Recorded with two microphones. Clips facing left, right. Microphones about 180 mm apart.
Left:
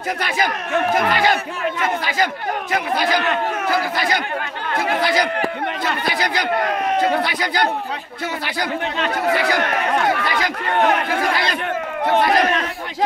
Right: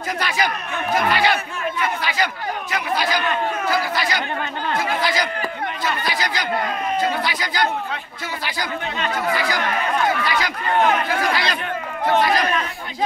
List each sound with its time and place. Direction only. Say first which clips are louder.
0.9 s speech: right 3 dB; 45° left (ahead or behind); by 3.7 s 65° left (ahead or behind)
3.7 s speech: left 2 dB; 55° left (ahead or behind)
4.7 s speech: left 4 dB; 65° left (ahead or behind)